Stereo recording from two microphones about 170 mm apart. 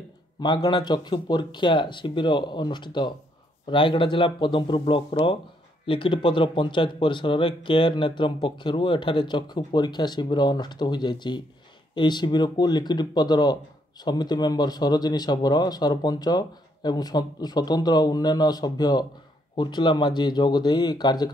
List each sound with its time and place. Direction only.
0.4 s speech: 25° left (ahead or behind)